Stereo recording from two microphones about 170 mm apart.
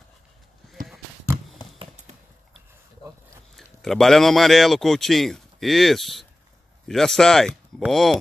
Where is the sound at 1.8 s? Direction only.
30° right (ahead or behind).